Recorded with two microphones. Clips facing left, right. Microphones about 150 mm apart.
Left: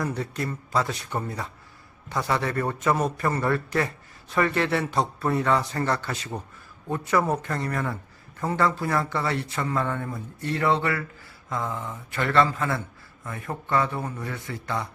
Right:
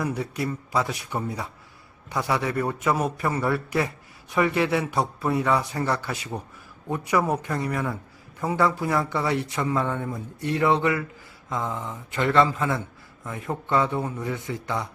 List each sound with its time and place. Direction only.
0.0 s a man's voice: 10° right (ahead or behind)